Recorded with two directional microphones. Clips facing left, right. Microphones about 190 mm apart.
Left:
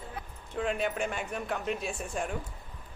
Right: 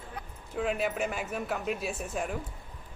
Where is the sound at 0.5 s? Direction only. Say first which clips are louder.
Right 1 dB; 5° right (ahead or behind).